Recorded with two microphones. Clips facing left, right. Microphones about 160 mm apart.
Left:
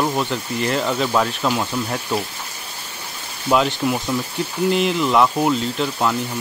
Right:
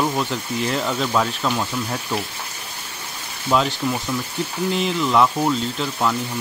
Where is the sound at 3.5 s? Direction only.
5° left (ahead or behind).